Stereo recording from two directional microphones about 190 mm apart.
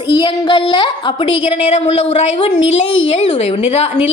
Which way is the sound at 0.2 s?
25° left (ahead or behind).